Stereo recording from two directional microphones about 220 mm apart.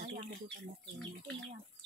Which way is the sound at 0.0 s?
35° right (ahead or behind).